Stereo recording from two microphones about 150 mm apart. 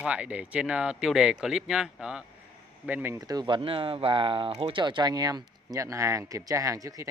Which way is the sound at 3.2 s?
25° right (ahead or behind).